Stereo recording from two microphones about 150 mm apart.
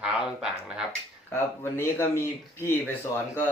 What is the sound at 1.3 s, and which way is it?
A man's voice, 15° left (ahead or behind).